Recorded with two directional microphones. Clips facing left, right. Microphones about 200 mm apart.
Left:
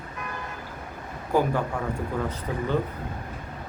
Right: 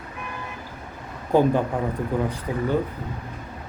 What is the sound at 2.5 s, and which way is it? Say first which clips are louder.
Speech: right 2 dB; 15° right (ahead or behind).